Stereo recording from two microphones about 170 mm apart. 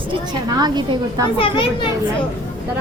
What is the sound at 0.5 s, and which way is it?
Speech, 25° right (ahead or behind).